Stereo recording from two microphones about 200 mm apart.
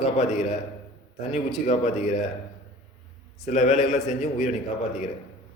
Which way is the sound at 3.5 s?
35° left (ahead or behind).